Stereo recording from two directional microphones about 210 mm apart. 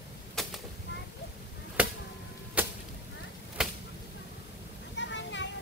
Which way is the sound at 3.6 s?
5° right (ahead or behind).